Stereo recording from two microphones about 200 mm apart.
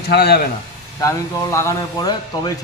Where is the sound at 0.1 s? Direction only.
55° left (ahead or behind).